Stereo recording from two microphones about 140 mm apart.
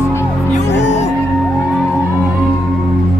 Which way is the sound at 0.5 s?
55° left (ahead or behind).